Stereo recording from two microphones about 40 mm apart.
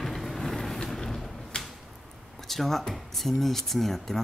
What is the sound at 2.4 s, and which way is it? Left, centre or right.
Speech, centre.